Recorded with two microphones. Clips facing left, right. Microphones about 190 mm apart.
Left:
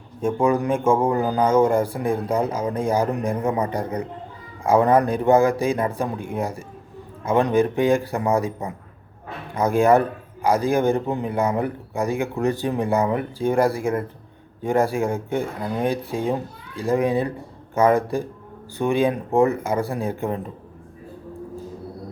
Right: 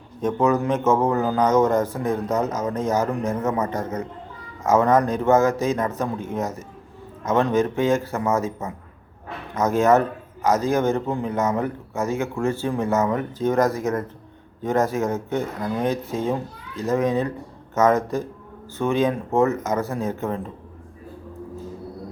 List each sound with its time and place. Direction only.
0.2 s a man's voice: 10° left (ahead or behind)